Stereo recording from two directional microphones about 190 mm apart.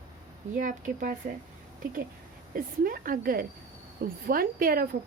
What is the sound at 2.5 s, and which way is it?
A woman's voice, 50° right (ahead or behind).